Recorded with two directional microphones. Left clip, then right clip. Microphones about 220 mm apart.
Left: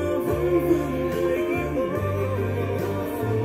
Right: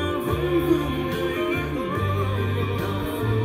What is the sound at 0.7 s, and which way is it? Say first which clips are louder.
Music: even; 35° right (ahead or behind).